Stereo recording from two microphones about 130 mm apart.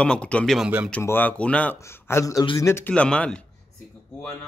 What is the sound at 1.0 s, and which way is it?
Speech, 15° left (ahead or behind).